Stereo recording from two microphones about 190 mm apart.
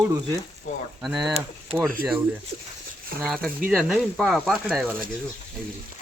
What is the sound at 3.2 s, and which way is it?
Speech, 5° left (ahead or behind).